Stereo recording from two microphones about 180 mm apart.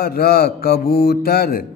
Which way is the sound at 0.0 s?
60° left (ahead or behind).